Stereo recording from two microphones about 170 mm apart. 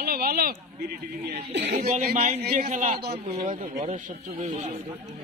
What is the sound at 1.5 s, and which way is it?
Speech, 90° right.